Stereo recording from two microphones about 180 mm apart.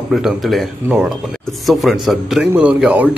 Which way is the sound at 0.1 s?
Centre (ahead or behind).